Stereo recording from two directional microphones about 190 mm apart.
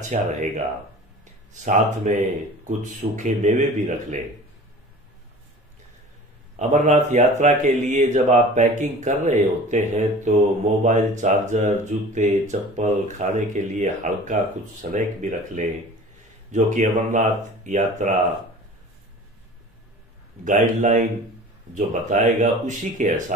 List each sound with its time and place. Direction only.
0.1 s speech: 40° right (ahead or behind)
6.5 s speech: 40° right (ahead or behind)
20.4 s speech: 40° right (ahead or behind)